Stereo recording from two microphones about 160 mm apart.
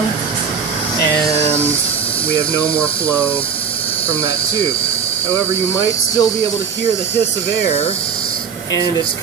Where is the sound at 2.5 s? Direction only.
10° left (ahead or behind).